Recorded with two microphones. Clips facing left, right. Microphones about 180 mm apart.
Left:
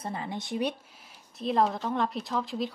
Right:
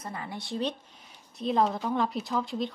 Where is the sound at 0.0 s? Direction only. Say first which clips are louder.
Left 3 dB; 25° left (ahead or behind).